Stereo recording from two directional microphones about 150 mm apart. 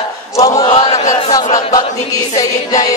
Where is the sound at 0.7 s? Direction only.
50° left (ahead or behind).